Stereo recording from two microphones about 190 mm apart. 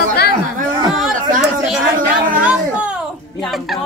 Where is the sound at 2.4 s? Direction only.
5° right (ahead or behind).